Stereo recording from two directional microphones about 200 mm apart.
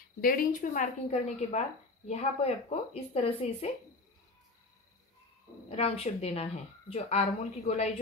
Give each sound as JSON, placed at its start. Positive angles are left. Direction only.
{"t": 0.2, "sound": "a woman's voice", "side_deg": 45}
{"t": 5.8, "sound": "a woman's voice", "side_deg": 30}